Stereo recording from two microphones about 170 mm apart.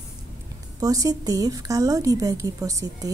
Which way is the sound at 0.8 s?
20° right (ahead or behind).